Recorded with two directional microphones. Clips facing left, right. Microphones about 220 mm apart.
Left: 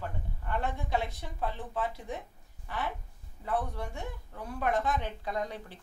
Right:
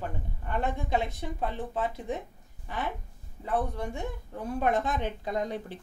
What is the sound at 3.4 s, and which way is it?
Speech, 20° right (ahead or behind).